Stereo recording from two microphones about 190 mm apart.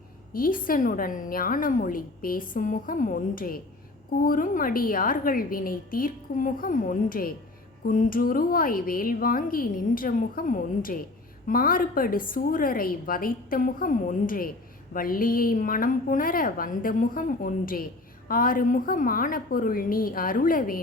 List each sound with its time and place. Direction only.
0.3 s a woman's voice: 50° left (ahead or behind)